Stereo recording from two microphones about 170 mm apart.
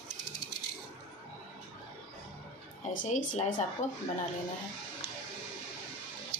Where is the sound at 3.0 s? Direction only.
50° left (ahead or behind).